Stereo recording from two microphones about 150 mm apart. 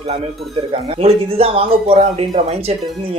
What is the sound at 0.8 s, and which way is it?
Speech, 45° right (ahead or behind).